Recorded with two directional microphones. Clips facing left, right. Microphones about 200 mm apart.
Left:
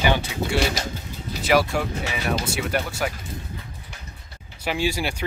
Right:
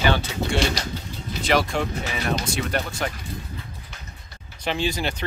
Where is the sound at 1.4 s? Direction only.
5° left (ahead or behind).